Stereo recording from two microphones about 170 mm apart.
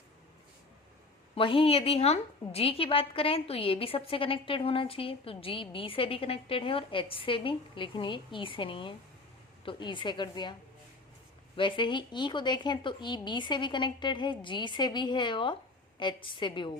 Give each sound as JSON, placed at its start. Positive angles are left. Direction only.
{"t": 1.4, "sound": "a woman's voice", "side_deg": 30}
{"t": 11.5, "sound": "speech", "side_deg": 30}